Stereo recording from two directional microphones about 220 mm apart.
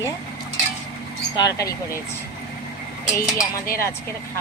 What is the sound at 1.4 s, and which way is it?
Speech, 15° left (ahead or behind).